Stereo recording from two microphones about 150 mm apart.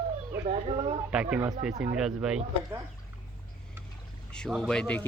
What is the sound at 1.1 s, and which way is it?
Speech, 10° right (ahead or behind).